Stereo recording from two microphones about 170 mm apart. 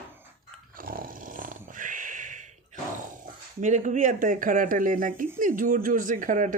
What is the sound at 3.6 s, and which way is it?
Speech, 45° right (ahead or behind).